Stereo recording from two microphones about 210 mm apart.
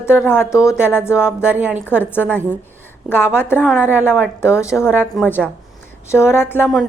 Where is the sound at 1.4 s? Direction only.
5° right (ahead or behind).